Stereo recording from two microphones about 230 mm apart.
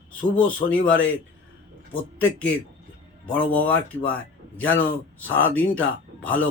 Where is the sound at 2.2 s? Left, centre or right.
Centre.